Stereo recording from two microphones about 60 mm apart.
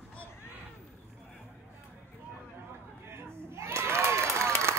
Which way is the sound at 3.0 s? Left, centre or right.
Right.